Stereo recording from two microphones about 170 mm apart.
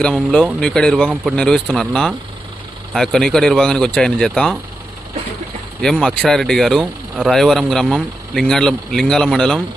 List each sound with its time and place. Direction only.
0.0 s speech: 5° left (ahead or behind)
5.8 s speech: 5° left (ahead or behind)